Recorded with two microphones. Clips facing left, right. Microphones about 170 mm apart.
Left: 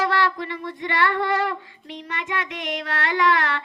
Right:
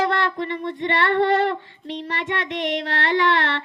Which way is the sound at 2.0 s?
40° right (ahead or behind).